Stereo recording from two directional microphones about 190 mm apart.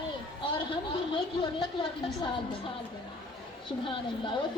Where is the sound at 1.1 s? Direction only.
25° left (ahead or behind).